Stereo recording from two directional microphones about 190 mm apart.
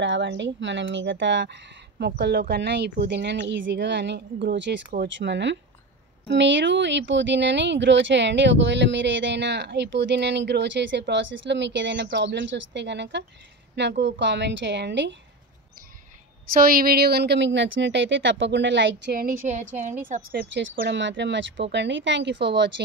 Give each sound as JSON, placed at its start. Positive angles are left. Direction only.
{"t": 0.0, "sound": "speech", "side_deg": -70}
{"t": 16.5, "sound": "speech", "side_deg": -50}
{"t": 19.1, "sound": "a woman's voice", "side_deg": -50}